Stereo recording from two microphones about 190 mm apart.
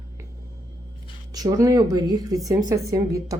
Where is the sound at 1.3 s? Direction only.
20° right (ahead or behind).